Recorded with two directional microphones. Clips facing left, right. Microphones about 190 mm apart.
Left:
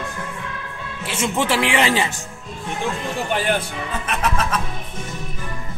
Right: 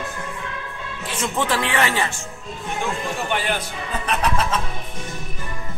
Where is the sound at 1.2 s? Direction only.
10° left (ahead or behind).